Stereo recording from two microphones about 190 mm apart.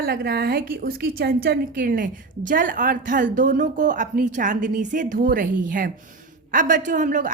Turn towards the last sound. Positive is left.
turn(degrees=-45)  # may be behind; listen again after turning